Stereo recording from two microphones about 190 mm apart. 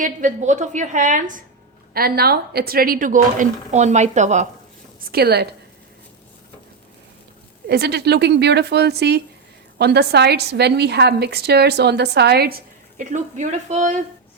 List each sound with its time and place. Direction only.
0.0 s a woman's voice: 40° right (ahead or behind)
1.9 s a woman's voice: 50° right (ahead or behind)
5.1 s a woman's voice: 55° right (ahead or behind)
7.7 s a woman's voice: 60° right (ahead or behind)
13.0 s a woman's voice: 40° right (ahead or behind)